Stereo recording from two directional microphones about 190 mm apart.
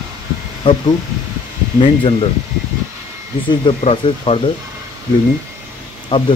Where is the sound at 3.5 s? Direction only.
30° left (ahead or behind).